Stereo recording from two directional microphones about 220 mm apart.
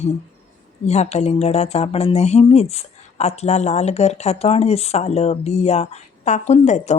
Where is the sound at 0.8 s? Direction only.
30° left (ahead or behind).